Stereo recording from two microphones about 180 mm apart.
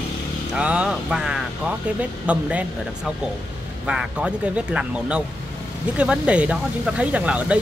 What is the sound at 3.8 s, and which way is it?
Speech, 5° right (ahead or behind).